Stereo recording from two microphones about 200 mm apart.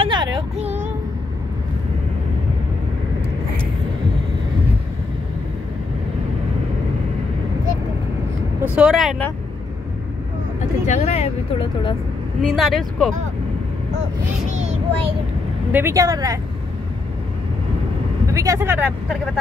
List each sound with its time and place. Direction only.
0.0 s child singing: 20° right (ahead or behind)
8.7 s speech: 5° right (ahead or behind)
10.9 s speech: 35° left (ahead or behind)
12.4 s speech: centre (ahead or behind)
15.7 s speech: 15° right (ahead or behind)
18.3 s speech: 15° right (ahead or behind)